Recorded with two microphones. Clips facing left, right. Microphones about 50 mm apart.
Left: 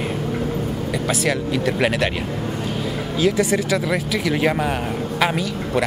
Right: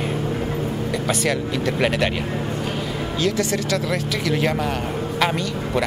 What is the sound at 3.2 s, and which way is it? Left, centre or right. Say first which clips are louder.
A man's voice: left 4 dB; centre.